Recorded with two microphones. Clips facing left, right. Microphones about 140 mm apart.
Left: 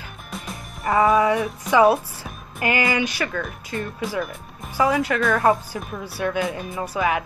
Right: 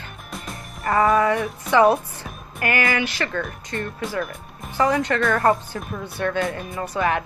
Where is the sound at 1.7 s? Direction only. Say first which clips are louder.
Even; 5° left (ahead or behind).